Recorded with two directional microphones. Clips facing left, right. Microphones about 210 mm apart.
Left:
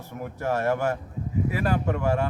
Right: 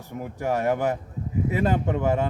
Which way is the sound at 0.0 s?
15° right (ahead or behind).